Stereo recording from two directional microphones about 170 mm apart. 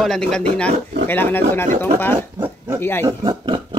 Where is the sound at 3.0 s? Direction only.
25° right (ahead or behind).